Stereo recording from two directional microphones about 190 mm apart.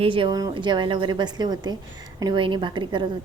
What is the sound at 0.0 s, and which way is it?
A woman's voice, 25° right (ahead or behind).